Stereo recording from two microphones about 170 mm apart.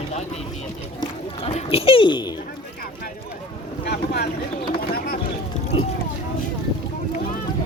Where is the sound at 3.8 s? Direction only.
75° left (ahead or behind).